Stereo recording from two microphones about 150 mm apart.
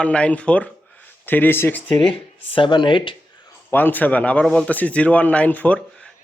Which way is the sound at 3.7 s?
10° left (ahead or behind).